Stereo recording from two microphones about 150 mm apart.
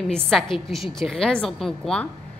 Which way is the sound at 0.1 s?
Centre (ahead or behind).